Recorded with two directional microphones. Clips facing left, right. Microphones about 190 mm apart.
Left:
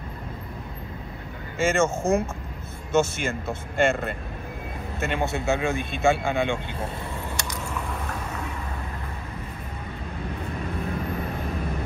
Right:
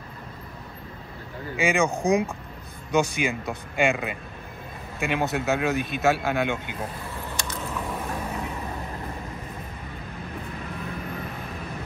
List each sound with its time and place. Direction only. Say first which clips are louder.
1.6 s speech: left 1 dB; centre (ahead or behind)
1.9 s speech: right 1 dB; 15° right (ahead or behind)
3.0 s speech: even; centre (ahead or behind)